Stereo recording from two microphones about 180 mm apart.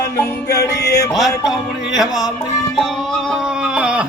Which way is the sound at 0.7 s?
70° left (ahead or behind).